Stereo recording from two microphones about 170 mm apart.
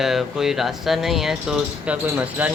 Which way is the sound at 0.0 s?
Centre (ahead or behind).